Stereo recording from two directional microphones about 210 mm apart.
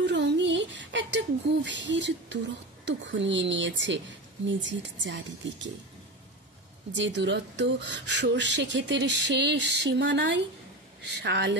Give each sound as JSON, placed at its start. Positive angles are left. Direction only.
{"t": 0.0, "sound": "speech", "side_deg": -55}
{"t": 6.9, "sound": "speech", "side_deg": -60}